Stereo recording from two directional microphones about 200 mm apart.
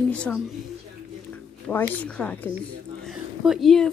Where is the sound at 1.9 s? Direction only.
5° left (ahead or behind).